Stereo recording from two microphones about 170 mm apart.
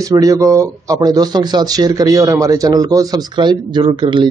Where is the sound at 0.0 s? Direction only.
20° right (ahead or behind).